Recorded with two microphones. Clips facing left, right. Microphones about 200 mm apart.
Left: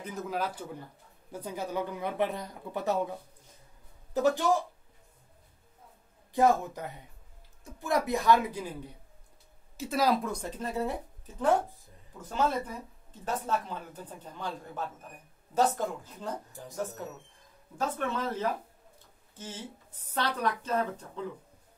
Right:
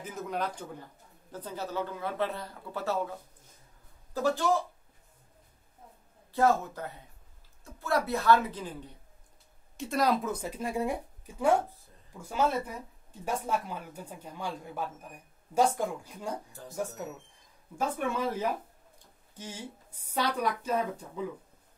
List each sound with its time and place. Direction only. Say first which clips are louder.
0.0 s speech: left 1 dB; centre (ahead or behind); by 4.6 s 15° left (ahead or behind)
6.3 s speech: left 1 dB; 15° left (ahead or behind); by 21.3 s 10° right (ahead or behind)